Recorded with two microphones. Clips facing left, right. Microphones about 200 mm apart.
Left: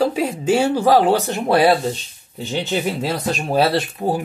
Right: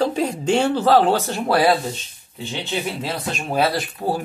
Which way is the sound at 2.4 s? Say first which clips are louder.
Left 4 dB; 40° left (ahead or behind).